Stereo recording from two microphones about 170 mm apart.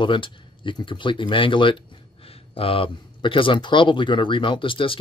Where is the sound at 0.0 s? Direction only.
30° left (ahead or behind).